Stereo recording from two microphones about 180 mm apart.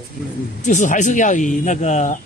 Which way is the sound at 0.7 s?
45° left (ahead or behind).